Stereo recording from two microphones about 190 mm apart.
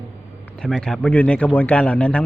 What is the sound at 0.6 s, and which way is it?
Speech, 5° left (ahead or behind).